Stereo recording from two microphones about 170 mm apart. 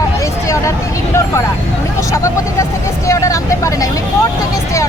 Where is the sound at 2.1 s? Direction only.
20° left (ahead or behind).